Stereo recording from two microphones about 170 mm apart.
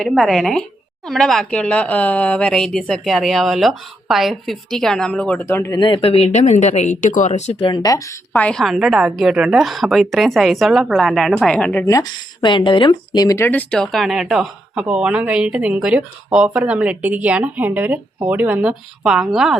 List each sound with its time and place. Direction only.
0.0 s speech: centre (ahead or behind)
5.8 s speech: 30° left (ahead or behind)
7.7 s speech: 25° left (ahead or behind); by 11.9 s 10° left (ahead or behind)
11.9 s speech: 20° left (ahead or behind); by 19.5 s 5° right (ahead or behind)